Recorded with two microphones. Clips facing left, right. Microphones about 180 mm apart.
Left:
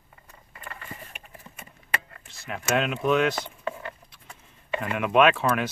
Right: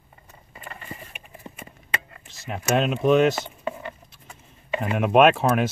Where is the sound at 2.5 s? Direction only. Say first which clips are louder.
Right 3 dB; 35° right (ahead or behind).